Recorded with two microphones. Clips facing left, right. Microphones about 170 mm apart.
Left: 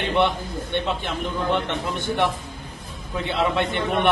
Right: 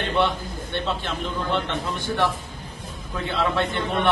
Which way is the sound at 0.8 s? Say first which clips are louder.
Left 1 dB; 15° left (ahead or behind).